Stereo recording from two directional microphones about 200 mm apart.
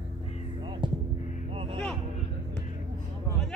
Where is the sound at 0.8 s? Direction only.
25° right (ahead or behind).